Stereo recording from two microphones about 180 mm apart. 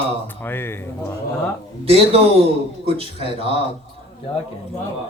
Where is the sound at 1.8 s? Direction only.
35° right (ahead or behind).